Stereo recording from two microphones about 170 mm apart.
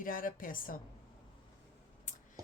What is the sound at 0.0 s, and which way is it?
Speech, 55° left (ahead or behind).